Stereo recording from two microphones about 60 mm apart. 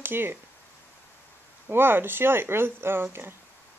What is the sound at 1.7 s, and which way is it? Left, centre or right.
Speech, right.